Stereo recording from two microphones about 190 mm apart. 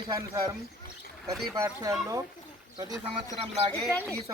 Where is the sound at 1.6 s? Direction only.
15° right (ahead or behind).